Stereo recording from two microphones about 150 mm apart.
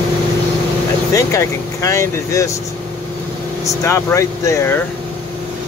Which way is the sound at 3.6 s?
20° left (ahead or behind).